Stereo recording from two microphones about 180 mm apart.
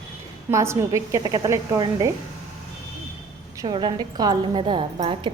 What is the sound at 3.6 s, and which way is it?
A woman's voice, 25° right (ahead or behind).